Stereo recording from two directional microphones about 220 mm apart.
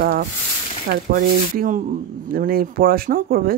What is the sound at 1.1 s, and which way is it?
Speech, 40° right (ahead or behind).